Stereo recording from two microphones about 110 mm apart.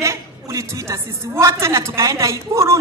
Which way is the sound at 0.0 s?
30° right (ahead or behind).